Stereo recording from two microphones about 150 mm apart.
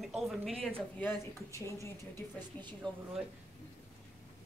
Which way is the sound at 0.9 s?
15° left (ahead or behind).